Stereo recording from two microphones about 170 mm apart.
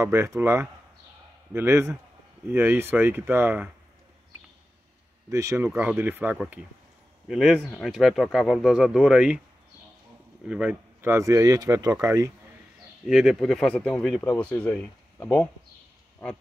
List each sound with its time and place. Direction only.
0.0 s speech: 15° right (ahead or behind)
5.3 s speech: 20° right (ahead or behind)
6.3 s speech: centre (ahead or behind)
10.5 s speech: 10° right (ahead or behind)
13.0 s speech: centre (ahead or behind)